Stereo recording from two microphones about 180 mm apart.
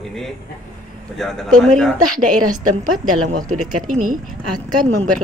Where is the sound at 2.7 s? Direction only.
45° right (ahead or behind).